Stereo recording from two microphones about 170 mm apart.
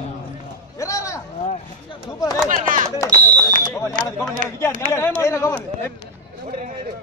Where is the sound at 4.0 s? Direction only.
55° right (ahead or behind).